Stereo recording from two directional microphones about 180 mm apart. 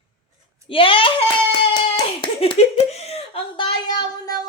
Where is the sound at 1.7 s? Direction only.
25° left (ahead or behind).